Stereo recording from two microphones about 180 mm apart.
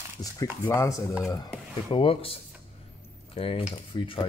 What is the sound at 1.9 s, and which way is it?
Speech, 30° left (ahead or behind).